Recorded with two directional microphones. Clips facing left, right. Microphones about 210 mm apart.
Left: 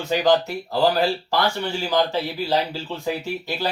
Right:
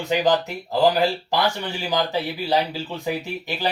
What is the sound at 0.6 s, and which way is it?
Speech, 15° right (ahead or behind).